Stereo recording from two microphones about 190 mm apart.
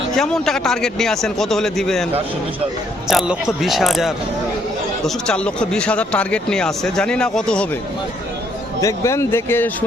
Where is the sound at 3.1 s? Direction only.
Centre (ahead or behind).